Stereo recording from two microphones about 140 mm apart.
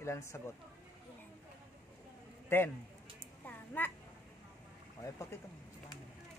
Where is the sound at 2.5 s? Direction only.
15° left (ahead or behind).